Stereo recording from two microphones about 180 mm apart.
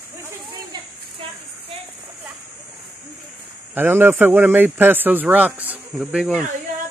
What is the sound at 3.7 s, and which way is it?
Speech, 10° right (ahead or behind).